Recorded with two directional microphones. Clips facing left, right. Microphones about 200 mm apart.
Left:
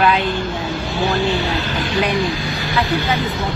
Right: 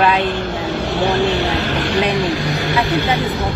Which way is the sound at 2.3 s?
40° right (ahead or behind).